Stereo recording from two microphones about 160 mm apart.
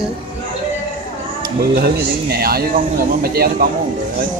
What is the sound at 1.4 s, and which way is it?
Speech, 75° right (ahead or behind).